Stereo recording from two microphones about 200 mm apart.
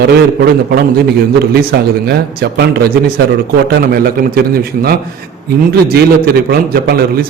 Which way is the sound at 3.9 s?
50° right (ahead or behind).